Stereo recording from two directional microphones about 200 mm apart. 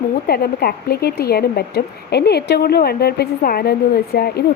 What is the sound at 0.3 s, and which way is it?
Speech, 50° left (ahead or behind).